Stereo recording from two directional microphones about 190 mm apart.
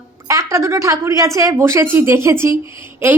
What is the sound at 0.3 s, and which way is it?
A woman's voice, 15° right (ahead or behind).